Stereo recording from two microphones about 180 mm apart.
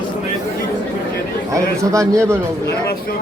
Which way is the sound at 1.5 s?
15° right (ahead or behind).